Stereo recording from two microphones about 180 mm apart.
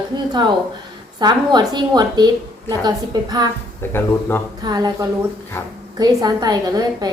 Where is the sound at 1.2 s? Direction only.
25° right (ahead or behind).